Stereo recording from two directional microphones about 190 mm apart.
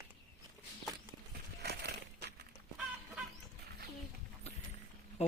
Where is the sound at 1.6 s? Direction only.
55° right (ahead or behind).